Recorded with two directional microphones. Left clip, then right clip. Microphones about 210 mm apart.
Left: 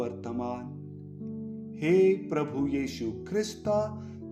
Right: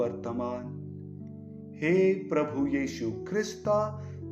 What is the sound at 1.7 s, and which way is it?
Music, 40° left (ahead or behind).